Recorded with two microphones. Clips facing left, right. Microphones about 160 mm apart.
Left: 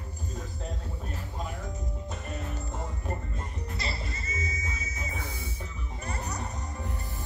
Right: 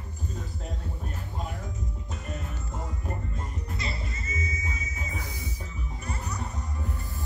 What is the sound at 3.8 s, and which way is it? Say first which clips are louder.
Music: left 1 dB; 35° left (ahead or behind).